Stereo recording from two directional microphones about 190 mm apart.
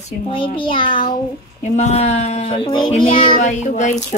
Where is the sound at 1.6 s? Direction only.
35° left (ahead or behind).